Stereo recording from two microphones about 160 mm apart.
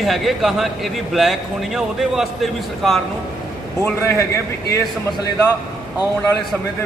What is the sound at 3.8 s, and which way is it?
Speech, 15° left (ahead or behind).